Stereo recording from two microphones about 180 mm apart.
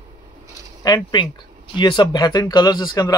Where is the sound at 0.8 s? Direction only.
25° left (ahead or behind).